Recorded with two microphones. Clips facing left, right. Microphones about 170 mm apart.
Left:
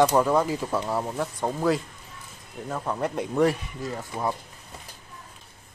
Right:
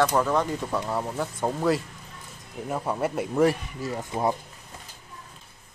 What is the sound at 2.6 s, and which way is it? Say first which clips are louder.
Speech: right 1 dB; 10° right (ahead or behind).